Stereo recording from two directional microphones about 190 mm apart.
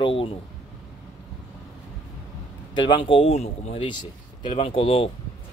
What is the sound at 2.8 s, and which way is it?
Speech, 25° left (ahead or behind).